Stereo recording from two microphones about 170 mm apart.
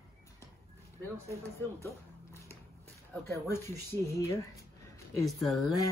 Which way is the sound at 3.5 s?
15° left (ahead or behind).